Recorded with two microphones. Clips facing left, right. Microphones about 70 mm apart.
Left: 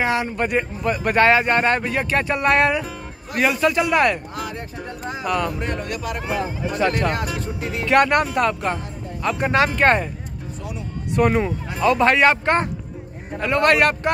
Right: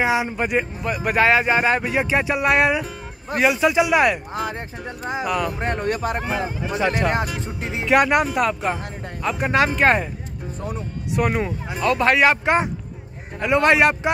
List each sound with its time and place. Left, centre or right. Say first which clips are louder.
0.0 s a man's voice: even; centre
4.3 s speech: right 3 dB; right
5.2 s speech: left 1 dB; centre
5.5 s speech: right 3 dB; right
6.3 s speech: even; centre
7.8 s a man's voice: even; centre
11.1 s a man's voice: left 3 dB; centre
13.4 s speech: right 1 dB; centre